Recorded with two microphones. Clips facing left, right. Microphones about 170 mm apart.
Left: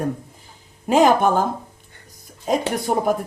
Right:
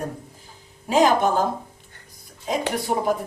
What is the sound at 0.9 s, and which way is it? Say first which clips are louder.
Speech: left 3 dB; 55° left (ahead or behind).